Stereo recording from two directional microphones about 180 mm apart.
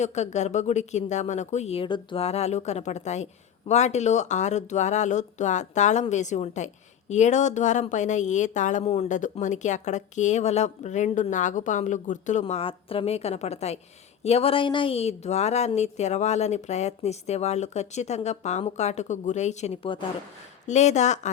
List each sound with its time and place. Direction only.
0.0 s speech: 40° left (ahead or behind)
20.7 s speech: 40° left (ahead or behind)